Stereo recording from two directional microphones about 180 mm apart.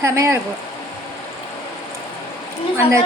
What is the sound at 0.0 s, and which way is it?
Speech, 15° right (ahead or behind).